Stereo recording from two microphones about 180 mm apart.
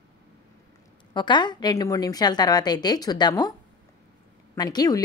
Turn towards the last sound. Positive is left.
turn(degrees=20)  # may be behind; listen again after turning